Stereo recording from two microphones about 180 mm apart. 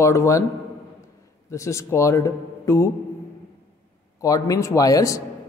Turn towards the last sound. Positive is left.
turn(degrees=20)  # may be behind; listen again after turning